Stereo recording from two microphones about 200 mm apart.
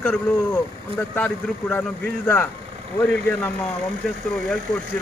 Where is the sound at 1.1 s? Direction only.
10° left (ahead or behind).